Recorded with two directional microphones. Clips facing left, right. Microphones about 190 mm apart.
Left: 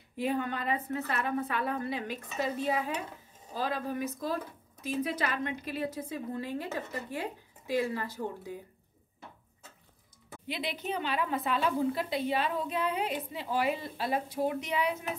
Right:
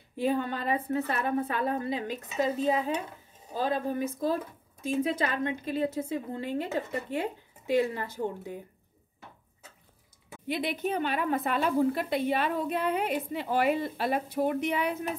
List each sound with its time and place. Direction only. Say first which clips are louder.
0.2 s a woman's voice: right 3 dB; 30° right (ahead or behind)
10.4 s a woman's voice: right 6 dB; 50° right (ahead or behind)